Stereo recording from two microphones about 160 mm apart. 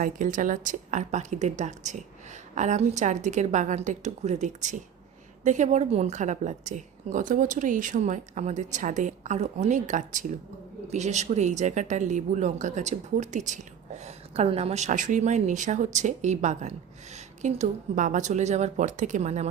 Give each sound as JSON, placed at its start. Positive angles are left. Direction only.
{"t": 0.0, "sound": "speech", "side_deg": -55}